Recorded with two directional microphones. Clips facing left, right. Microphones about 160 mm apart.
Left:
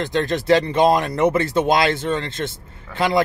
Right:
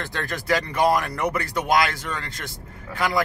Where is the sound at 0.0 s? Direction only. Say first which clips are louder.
Left 9 dB; 20° left (ahead or behind).